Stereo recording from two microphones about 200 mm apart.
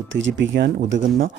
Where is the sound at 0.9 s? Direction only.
45° right (ahead or behind).